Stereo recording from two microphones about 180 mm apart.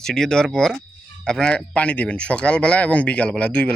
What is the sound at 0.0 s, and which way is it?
Speech, 5° left (ahead or behind).